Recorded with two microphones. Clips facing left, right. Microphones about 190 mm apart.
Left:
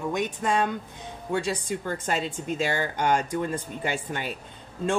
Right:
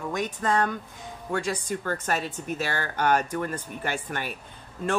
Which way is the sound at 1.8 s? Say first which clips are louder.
Even; 15° left (ahead or behind).